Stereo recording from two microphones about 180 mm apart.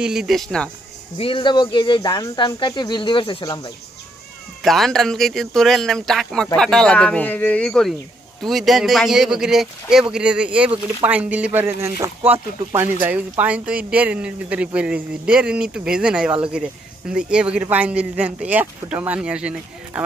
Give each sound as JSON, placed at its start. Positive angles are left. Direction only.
{"t": 0.0, "sound": "speech", "side_deg": -5}
{"t": 1.1, "sound": "speech", "side_deg": 30}
{"t": 4.6, "sound": "speech", "side_deg": 0}